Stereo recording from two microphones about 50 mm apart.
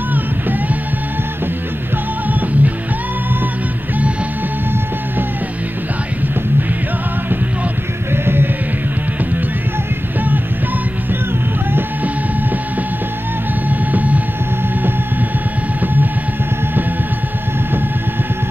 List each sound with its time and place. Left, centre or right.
2.2 s music: right
8.1 s music: right
13.7 s music: right
15.8 s music: right